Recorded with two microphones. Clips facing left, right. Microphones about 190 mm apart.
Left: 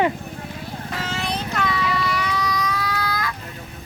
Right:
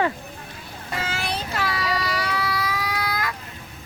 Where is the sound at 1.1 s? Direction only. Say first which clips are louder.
Left 4 dB; 5° right (ahead or behind).